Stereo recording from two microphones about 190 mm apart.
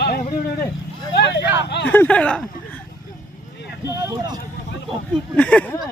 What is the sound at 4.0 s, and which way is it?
Speech, 20° right (ahead or behind).